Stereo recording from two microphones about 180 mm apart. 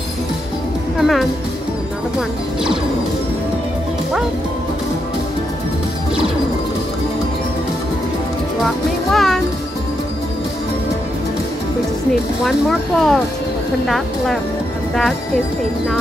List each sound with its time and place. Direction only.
0.9 s speech: centre (ahead or behind)
8.6 s speech: centre (ahead or behind)
12.4 s speech: centre (ahead or behind)